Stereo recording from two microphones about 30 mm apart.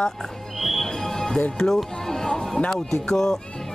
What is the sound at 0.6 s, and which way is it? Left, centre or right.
Music, centre.